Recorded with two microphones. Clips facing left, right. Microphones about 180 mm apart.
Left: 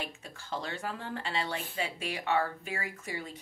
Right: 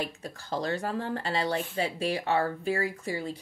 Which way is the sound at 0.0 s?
40° right (ahead or behind).